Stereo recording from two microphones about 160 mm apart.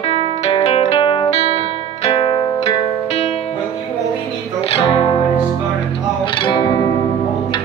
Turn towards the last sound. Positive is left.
turn(degrees=30)  # may be behind; listen again after turning